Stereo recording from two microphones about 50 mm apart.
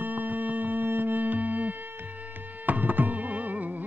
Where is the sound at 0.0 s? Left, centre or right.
Right.